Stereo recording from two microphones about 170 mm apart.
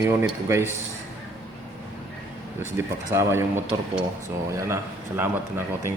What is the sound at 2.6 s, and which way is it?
Speech, 15° right (ahead or behind).